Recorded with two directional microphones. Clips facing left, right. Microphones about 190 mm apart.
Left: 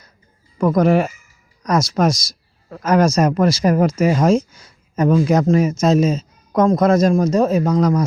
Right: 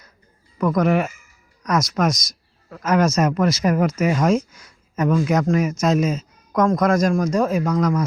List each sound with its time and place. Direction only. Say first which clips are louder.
0.6 s speech: left 4 dB; 30° left (ahead or behind)